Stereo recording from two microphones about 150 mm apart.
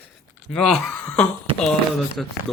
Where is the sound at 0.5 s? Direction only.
Centre (ahead or behind).